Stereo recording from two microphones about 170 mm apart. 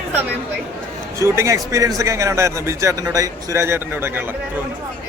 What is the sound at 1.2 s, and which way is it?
A man's voice, 15° right (ahead or behind).